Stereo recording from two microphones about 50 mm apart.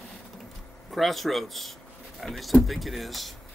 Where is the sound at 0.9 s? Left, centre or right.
Centre.